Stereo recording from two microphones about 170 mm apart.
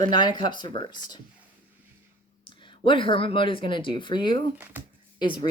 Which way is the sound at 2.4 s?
30° left (ahead or behind).